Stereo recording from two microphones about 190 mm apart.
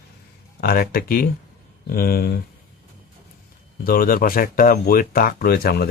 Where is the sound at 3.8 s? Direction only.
50° left (ahead or behind).